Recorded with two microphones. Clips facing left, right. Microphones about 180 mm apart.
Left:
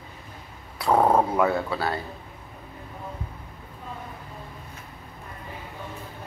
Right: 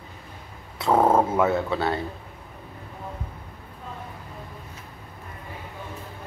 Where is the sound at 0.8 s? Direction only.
Centre (ahead or behind).